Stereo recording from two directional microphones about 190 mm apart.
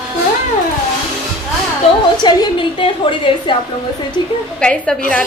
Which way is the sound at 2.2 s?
25° left (ahead or behind).